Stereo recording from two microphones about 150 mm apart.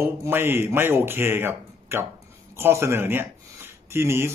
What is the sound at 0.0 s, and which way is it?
Speech, 15° right (ahead or behind).